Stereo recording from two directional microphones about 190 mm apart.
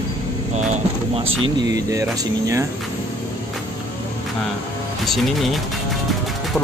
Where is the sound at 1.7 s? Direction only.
20° right (ahead or behind).